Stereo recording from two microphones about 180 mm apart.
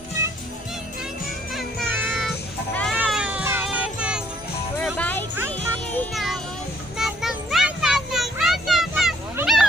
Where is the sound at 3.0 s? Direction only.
5° right (ahead or behind).